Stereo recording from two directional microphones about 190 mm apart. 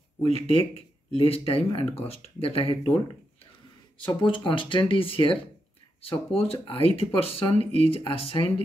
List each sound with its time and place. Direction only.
0.2 s speech: 30° left (ahead or behind)
4.1 s speech: 25° left (ahead or behind)